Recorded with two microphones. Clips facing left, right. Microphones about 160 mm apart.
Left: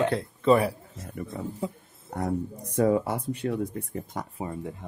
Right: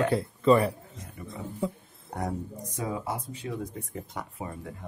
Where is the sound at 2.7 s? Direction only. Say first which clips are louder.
Left 10 dB; 60° left (ahead or behind).